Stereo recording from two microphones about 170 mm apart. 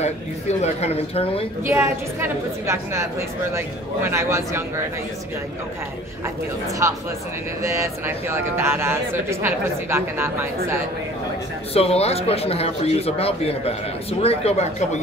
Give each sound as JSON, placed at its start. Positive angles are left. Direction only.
{"t": 0.0, "sound": "speech", "side_deg": 40}
{"t": 1.7, "sound": "speech", "side_deg": -15}
{"t": 6.8, "sound": "speech", "side_deg": -15}
{"t": 11.7, "sound": "speech", "side_deg": 35}